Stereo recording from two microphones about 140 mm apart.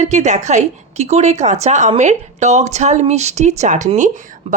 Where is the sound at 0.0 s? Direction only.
55° right (ahead or behind).